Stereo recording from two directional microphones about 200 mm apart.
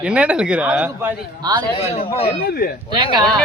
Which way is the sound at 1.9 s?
30° left (ahead or behind).